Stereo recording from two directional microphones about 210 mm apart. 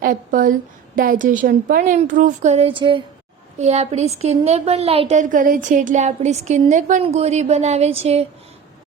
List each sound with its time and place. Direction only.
0.0 s a woman's voice: 40° right (ahead or behind)